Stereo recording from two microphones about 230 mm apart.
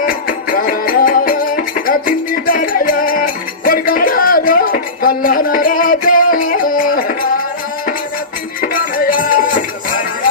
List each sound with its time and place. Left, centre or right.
0.0 s music: left
8.6 s music: left